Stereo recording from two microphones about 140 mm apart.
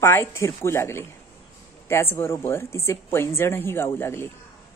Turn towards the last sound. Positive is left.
turn(degrees=15)  # may be behind; listen again after turning